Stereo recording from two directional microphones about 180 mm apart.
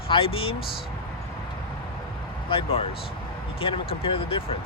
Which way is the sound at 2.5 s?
30° left (ahead or behind).